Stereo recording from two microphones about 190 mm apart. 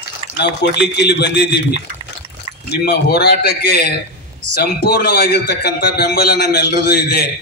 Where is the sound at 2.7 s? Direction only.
60° left (ahead or behind).